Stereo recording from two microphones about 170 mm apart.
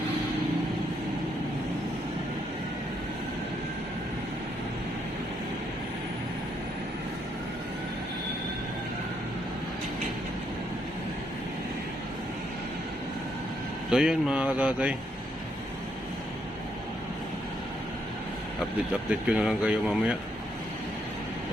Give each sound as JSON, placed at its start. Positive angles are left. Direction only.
{"t": 13.9, "sound": "speech", "side_deg": -5}
{"t": 19.3, "sound": "speech", "side_deg": -5}